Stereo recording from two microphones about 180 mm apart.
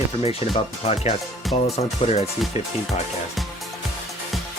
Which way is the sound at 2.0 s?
35° left (ahead or behind).